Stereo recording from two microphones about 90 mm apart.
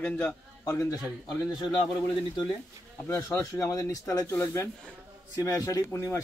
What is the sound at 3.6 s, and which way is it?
Speech, 40° left (ahead or behind).